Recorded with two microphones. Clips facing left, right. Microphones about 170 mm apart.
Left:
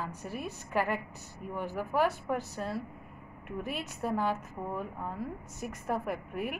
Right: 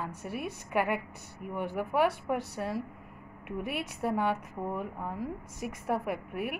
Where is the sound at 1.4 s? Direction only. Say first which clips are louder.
Right 1 dB; 65° right (ahead or behind).